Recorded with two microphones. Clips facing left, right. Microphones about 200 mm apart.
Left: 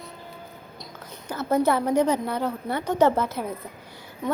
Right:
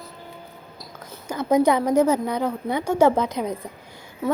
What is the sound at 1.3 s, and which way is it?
A woman's voice, 15° right (ahead or behind).